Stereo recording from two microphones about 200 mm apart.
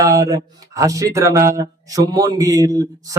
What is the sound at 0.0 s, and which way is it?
Speech, 15° right (ahead or behind).